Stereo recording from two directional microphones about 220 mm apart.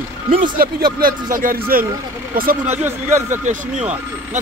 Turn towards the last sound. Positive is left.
turn(degrees=-35)  # may be behind; listen again after turning